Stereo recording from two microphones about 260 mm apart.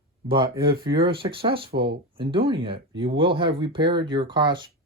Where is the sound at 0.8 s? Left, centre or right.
Centre.